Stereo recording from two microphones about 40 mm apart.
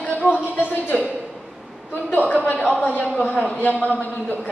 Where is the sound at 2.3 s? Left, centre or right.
Left.